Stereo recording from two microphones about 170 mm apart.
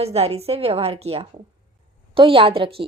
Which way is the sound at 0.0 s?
35° right (ahead or behind).